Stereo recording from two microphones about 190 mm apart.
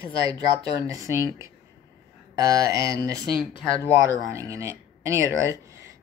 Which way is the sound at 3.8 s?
15° right (ahead or behind).